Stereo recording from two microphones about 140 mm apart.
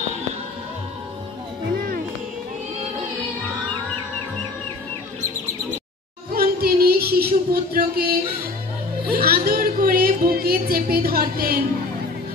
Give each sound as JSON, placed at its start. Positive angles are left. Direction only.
{"t": 6.3, "sound": "music", "side_deg": -90}
{"t": 9.1, "sound": "a woman's voice", "side_deg": -90}